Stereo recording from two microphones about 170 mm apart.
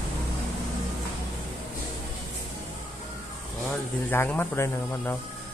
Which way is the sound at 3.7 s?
10° left (ahead or behind).